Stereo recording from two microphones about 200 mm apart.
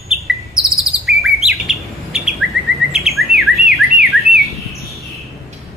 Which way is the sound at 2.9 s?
Centre (ahead or behind).